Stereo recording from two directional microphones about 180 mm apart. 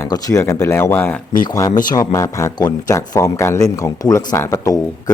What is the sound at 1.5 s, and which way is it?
Speech, 20° left (ahead or behind).